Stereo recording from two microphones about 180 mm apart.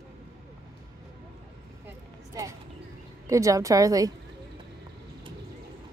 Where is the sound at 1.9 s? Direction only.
15° right (ahead or behind).